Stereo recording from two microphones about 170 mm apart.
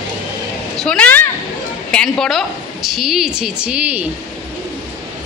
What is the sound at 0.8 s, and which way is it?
A woman's voice, 5° left (ahead or behind).